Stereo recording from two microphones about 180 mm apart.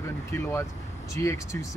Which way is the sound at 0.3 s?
15° left (ahead or behind).